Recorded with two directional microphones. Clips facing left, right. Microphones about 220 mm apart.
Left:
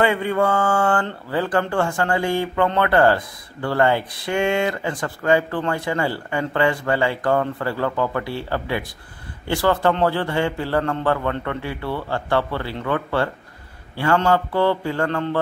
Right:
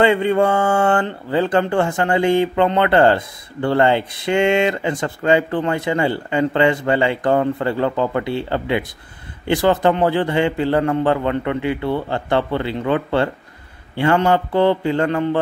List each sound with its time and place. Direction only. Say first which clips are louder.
0.0 s speech: right 4 dB; 25° right (ahead or behind)